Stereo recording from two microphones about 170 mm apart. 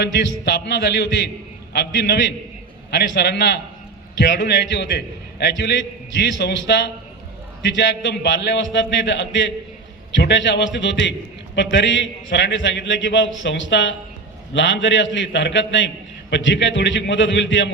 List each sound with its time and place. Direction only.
0.0 s a man's voice: 90° left
2.9 s a man's voice: 90° left